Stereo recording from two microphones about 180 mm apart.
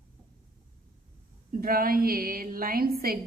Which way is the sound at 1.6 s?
55° right (ahead or behind).